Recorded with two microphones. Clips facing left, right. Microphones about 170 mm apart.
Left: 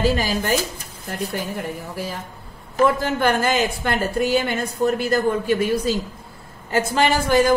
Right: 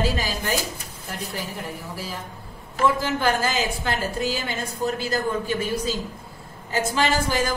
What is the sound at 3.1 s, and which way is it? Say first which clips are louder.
A woman's voice: left 4 dB; 55° left (ahead or behind).